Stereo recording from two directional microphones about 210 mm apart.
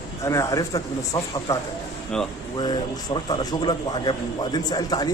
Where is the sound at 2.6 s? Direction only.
20° left (ahead or behind).